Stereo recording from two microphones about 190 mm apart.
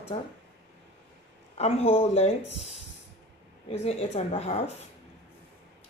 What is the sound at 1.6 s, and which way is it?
Speech, 30° left (ahead or behind).